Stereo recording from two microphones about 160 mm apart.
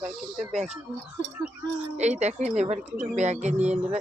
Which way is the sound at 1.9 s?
45° right (ahead or behind).